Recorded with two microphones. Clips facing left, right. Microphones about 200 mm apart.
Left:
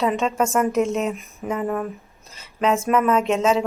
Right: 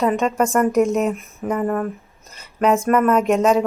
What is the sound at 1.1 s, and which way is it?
Speech, centre (ahead or behind).